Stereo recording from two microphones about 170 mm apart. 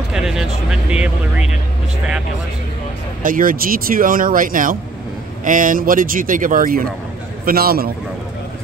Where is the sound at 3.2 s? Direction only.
55° right (ahead or behind).